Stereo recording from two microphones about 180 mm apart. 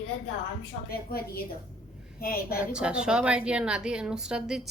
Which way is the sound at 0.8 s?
60° left (ahead or behind).